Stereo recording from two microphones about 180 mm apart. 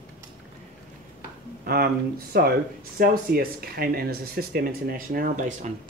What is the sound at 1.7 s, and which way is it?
Speech, 60° right (ahead or behind).